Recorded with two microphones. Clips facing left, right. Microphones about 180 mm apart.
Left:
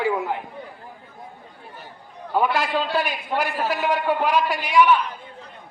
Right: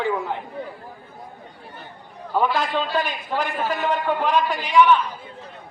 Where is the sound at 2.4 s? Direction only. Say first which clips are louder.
Even; 5° left (ahead or behind).